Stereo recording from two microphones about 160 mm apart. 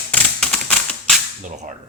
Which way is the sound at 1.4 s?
50° right (ahead or behind).